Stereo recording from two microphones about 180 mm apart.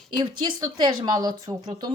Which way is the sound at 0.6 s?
25° right (ahead or behind).